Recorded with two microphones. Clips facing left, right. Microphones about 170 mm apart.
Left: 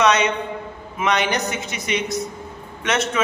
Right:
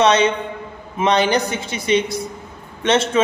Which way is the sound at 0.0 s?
30° right (ahead or behind).